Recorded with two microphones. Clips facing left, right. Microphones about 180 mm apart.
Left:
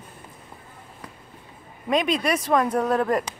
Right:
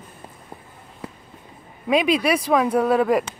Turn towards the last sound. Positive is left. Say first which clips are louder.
# right 4 dB
turn(degrees=-5)  # may be behind; listen again after turning